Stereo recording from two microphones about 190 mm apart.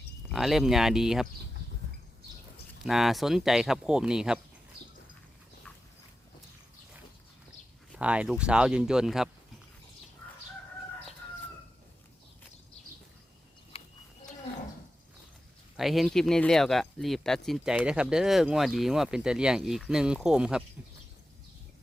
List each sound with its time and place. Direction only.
0.3 s speech: centre (ahead or behind)
2.8 s speech: centre (ahead or behind)
7.9 s speech: 5° right (ahead or behind)
13.7 s livestock: 30° left (ahead or behind)
15.8 s speech: centre (ahead or behind)